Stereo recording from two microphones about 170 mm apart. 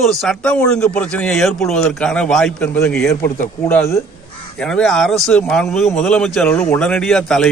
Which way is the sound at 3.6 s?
15° left (ahead or behind).